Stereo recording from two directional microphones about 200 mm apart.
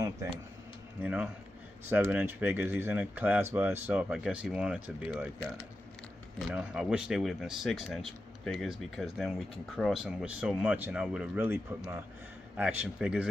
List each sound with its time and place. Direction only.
0.0 s speech: 15° right (ahead or behind)
1.0 s speech: 5° right (ahead or behind)